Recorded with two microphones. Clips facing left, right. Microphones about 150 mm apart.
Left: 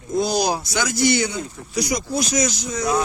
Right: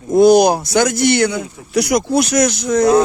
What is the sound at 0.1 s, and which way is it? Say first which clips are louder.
Speech: right 11 dB; 60° right (ahead or behind).